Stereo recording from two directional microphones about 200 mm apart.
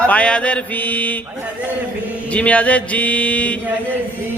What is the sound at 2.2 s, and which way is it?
Mantra, 5° left (ahead or behind).